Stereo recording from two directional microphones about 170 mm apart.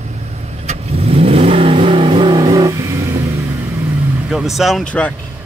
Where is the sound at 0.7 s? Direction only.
35° right (ahead or behind).